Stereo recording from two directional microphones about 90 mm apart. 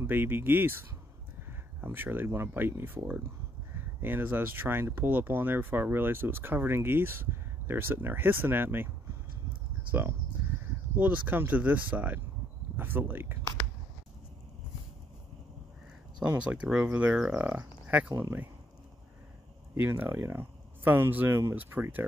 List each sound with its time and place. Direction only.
0.0 s speech: 25° right (ahead or behind)
1.9 s speech: 25° right (ahead or behind)
16.2 s speech: 15° right (ahead or behind)
19.7 s speech: 25° right (ahead or behind)